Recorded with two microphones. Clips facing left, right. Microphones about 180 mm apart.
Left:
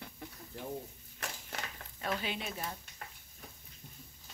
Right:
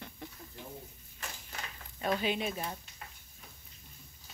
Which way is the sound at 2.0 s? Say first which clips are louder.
Right 5 dB; 20° right (ahead or behind).